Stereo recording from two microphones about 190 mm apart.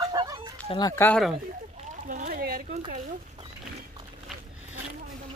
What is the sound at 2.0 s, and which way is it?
Speech, 45° right (ahead or behind).